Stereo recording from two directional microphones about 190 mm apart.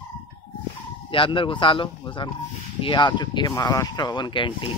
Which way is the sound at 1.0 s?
25° left (ahead or behind).